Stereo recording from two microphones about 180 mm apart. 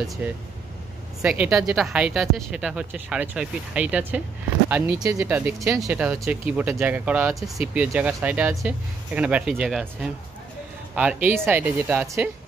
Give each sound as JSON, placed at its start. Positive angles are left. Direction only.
{"t": 0.2, "sound": "speech", "side_deg": -10}